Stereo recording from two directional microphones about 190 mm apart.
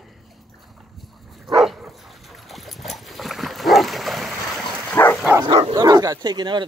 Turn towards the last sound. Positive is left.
turn(degrees=-25)  # may be behind; listen again after turning